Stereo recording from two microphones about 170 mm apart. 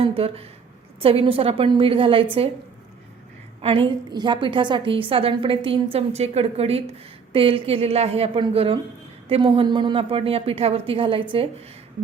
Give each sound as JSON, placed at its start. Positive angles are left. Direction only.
{"t": 0.0, "sound": "a woman's voice", "side_deg": -35}
{"t": 3.6, "sound": "a woman's voice", "side_deg": -30}